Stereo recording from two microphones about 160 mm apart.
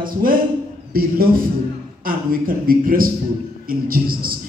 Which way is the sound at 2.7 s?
65° right (ahead or behind).